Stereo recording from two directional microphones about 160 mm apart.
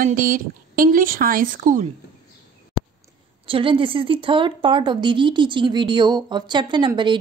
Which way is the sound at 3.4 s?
35° right (ahead or behind).